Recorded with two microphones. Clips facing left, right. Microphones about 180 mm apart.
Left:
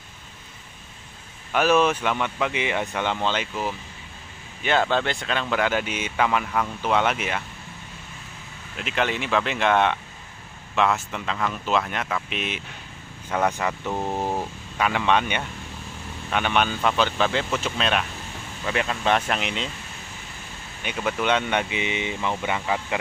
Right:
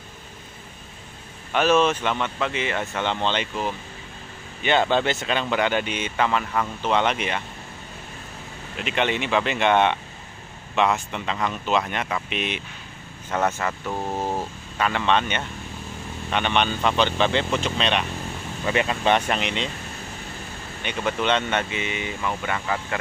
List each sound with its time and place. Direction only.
1.5 s speech: 10° left (ahead or behind)
8.7 s speech: centre (ahead or behind)
13.3 s speech: 10° left (ahead or behind)
13.9 s speech: centre (ahead or behind)
20.8 s speech: 5° left (ahead or behind)